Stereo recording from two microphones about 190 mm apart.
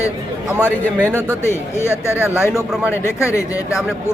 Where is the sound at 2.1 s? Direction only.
10° right (ahead or behind).